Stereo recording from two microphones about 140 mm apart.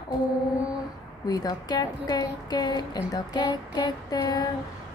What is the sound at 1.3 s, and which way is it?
Female singing, 30° left (ahead or behind).